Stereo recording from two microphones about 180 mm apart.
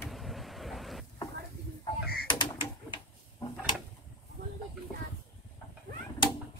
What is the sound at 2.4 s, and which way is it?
Bird, 25° left (ahead or behind).